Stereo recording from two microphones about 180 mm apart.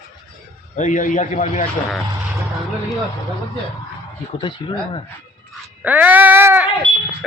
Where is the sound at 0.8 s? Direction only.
45° left (ahead or behind).